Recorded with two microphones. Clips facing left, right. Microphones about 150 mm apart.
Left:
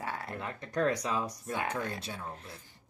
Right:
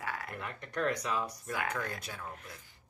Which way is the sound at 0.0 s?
30° left (ahead or behind).